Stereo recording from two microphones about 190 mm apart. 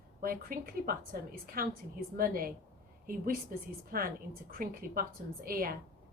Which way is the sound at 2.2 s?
50° right (ahead or behind).